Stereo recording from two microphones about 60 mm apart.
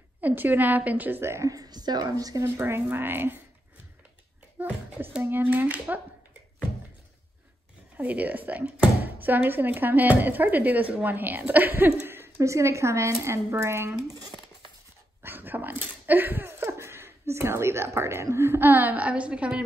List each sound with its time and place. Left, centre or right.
0.2 s a woman's voice: right
1.2 s speech: right
2.1 s speech: right
2.4 s speech: right
5.4 s a woman's voice: right
8.0 s a woman's voice: right
12.4 s a woman's voice: right
15.2 s speech: right; by 19.6 s centre